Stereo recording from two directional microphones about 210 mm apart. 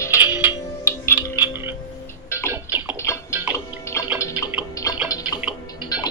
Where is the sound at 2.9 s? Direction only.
15° left (ahead or behind).